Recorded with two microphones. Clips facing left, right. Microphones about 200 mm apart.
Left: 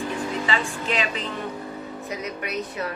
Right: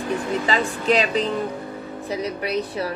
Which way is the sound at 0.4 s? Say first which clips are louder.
Right 5 dB; 40° right (ahead or behind).